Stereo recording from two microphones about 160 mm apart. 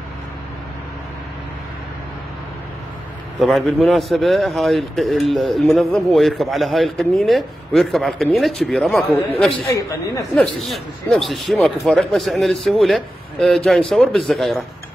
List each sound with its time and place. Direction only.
3.3 s a man's voice: centre (ahead or behind)
9.7 s a woman's voice: 20° left (ahead or behind)
10.3 s a man's voice: 5° left (ahead or behind)